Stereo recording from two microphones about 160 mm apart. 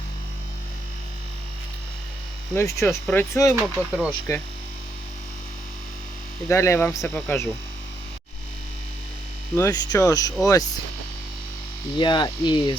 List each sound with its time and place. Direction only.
2.6 s speech: 15° left (ahead or behind)
3.5 s speech: 5° right (ahead or behind)
6.5 s speech: 15° left (ahead or behind)
9.6 s cricket: 20° left (ahead or behind)
11.9 s cricket: 30° left (ahead or behind)